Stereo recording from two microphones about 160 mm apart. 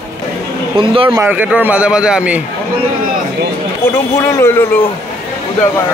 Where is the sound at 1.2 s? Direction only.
10° right (ahead or behind).